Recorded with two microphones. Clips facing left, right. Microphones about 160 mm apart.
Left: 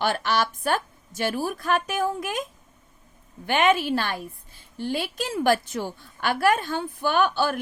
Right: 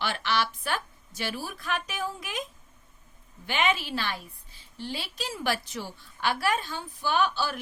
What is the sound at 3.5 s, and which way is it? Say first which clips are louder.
A woman's voice: left 7 dB; 50° left (ahead or behind).